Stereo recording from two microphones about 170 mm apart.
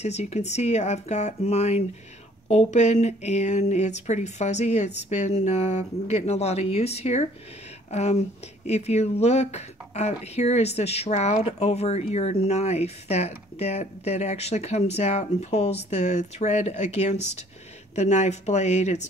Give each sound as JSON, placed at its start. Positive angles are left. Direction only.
{"t": 0.0, "sound": "speech", "side_deg": 40}